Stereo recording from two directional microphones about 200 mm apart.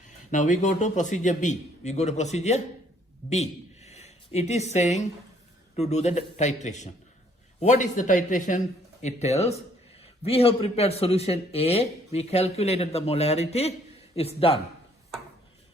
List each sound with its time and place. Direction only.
0.3 s a man's voice: 40° left (ahead or behind)